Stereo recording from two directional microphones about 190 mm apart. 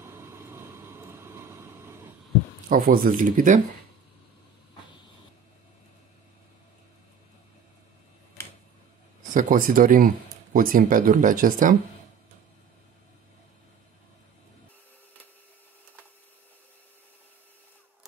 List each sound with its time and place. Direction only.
0.0 s vehicle: 15° right (ahead or behind)
2.7 s speech: 50° right (ahead or behind)
9.3 s speech: 45° right (ahead or behind)